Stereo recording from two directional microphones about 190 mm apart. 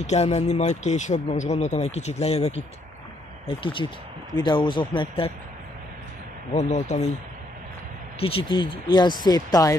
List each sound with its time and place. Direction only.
0.0 s speech: 35° left (ahead or behind)
6.5 s speech: 35° left (ahead or behind)
8.2 s speech: 30° left (ahead or behind)